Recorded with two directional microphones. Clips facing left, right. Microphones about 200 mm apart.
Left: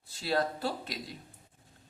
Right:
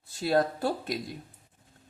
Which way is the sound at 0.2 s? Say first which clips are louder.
Right 5 dB; 50° right (ahead or behind).